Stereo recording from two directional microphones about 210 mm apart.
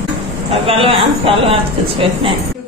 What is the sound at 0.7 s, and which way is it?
Speech, 25° right (ahead or behind).